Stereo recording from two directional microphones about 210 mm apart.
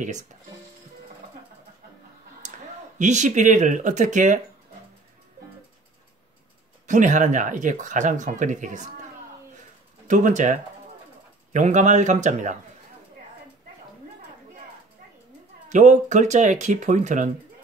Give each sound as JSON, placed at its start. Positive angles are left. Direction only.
{"t": 0.0, "sound": "speech", "side_deg": -35}
{"t": 2.4, "sound": "a sound", "side_deg": -35}
{"t": 3.0, "sound": "speech", "side_deg": -35}
{"t": 6.9, "sound": "speech", "side_deg": -35}
{"t": 10.0, "sound": "speech", "side_deg": -35}
{"t": 15.7, "sound": "speech", "side_deg": -35}